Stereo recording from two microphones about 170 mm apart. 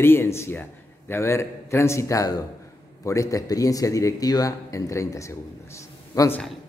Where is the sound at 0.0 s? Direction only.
15° left (ahead or behind).